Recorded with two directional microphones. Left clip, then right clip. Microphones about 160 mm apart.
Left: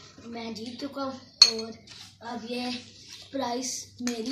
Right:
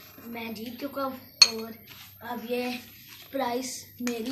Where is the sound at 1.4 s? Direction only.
30° right (ahead or behind).